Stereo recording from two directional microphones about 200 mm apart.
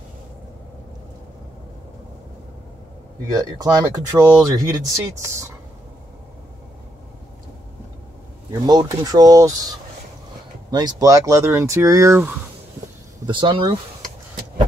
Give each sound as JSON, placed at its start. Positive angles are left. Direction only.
{"t": 3.3, "sound": "speech", "side_deg": -20}
{"t": 8.5, "sound": "speech", "side_deg": -20}
{"t": 13.3, "sound": "speech", "side_deg": -25}